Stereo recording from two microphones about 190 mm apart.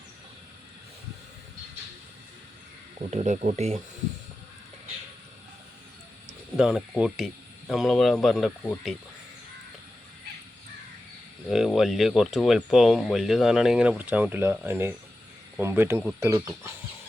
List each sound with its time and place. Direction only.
3.1 s speech: 35° right (ahead or behind)
6.6 s speech: 5° right (ahead or behind)
11.5 s speech: centre (ahead or behind)